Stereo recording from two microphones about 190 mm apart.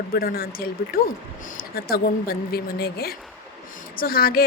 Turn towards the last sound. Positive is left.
turn(degrees=50)  # may be behind; listen again after turning